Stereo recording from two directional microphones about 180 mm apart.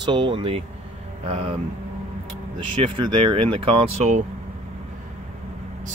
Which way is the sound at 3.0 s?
25° right (ahead or behind).